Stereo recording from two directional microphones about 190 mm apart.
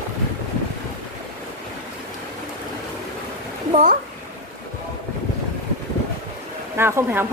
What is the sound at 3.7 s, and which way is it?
Speech, 40° right (ahead or behind).